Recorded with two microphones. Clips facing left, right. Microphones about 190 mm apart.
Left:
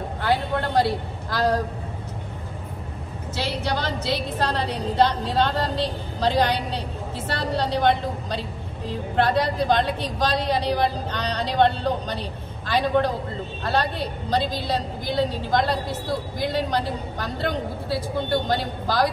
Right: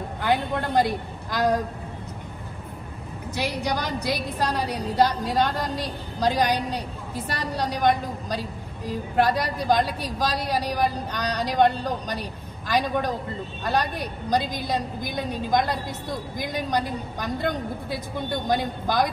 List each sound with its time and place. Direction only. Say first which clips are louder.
0.2 s a man's voice: left 1 dB; 15° right (ahead or behind)
3.3 s a woman's voice: even; 15° right (ahead or behind)